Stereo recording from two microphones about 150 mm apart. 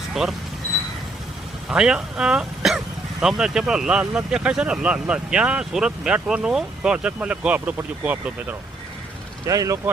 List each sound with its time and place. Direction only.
0.1 s speech: centre (ahead or behind)
1.7 s speech: 5° right (ahead or behind)
9.5 s speech: 20° right (ahead or behind)